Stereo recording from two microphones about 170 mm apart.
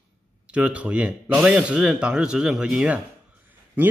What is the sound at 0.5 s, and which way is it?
Speech, 5° right (ahead or behind).